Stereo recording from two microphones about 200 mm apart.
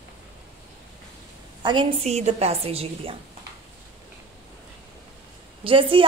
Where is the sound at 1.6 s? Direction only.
25° right (ahead or behind).